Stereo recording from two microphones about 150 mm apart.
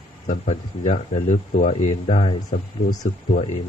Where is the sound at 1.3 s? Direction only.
55° left (ahead or behind).